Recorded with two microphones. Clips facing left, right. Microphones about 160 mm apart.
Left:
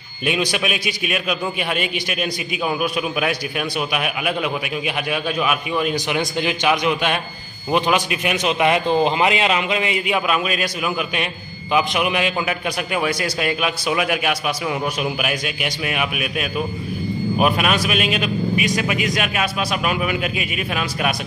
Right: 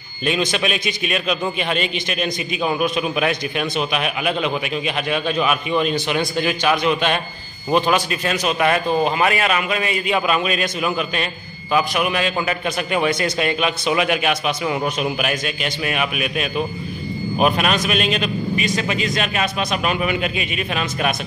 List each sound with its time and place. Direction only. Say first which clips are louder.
0.2 s a man's voice: right 1 dB; 10° left (ahead or behind)